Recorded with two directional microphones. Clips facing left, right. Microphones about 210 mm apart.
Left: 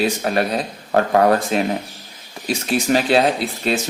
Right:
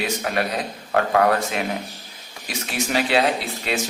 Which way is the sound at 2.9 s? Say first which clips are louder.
Left 4 dB; 40° left (ahead or behind).